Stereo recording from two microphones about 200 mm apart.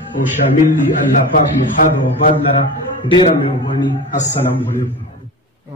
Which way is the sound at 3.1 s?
25° left (ahead or behind).